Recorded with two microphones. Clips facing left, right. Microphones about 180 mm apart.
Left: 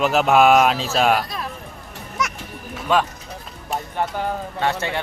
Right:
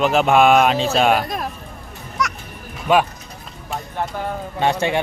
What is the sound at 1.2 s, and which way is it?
Speech, 50° right (ahead or behind).